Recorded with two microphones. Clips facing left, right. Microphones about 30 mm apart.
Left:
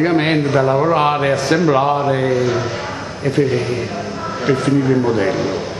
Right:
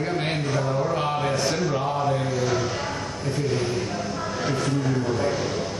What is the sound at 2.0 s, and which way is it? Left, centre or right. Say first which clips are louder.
Speech: left 8 dB; left.